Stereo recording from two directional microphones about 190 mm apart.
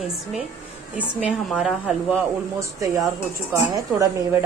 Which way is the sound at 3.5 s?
15° right (ahead or behind).